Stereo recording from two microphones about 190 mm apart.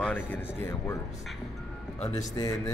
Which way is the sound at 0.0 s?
5° left (ahead or behind).